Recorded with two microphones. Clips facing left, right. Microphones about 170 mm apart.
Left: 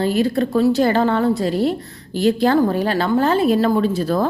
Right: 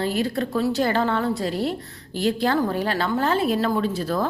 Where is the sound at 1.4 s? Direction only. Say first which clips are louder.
Left 6 dB; 15° left (ahead or behind).